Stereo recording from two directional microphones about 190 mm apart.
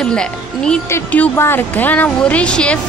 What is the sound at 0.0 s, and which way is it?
A woman's voice, 5° left (ahead or behind).